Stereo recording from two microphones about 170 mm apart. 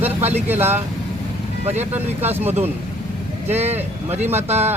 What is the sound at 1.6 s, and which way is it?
Speech, 40° right (ahead or behind).